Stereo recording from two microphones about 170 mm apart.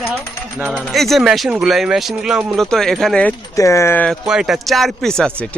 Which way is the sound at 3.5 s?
15° left (ahead or behind).